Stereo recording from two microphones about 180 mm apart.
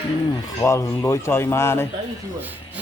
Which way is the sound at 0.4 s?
15° left (ahead or behind).